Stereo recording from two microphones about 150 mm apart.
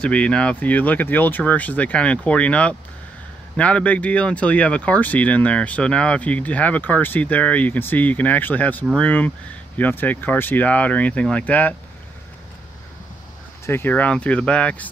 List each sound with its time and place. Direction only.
0.0 s speech: 10° left (ahead or behind)
13.7 s speech: 15° left (ahead or behind)